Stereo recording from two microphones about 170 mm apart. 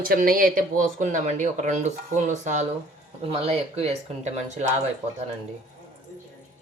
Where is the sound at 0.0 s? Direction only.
55° right (ahead or behind).